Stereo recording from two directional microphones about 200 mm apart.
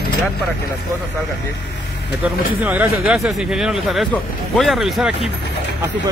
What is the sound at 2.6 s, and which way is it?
Speech, 10° right (ahead or behind).